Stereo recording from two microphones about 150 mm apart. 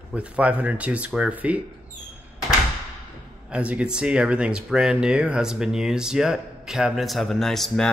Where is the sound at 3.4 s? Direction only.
10° right (ahead or behind).